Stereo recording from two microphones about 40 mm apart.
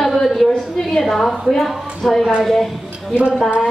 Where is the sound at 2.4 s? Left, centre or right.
Centre.